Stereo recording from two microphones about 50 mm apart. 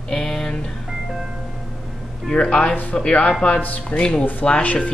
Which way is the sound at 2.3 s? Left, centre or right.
Centre.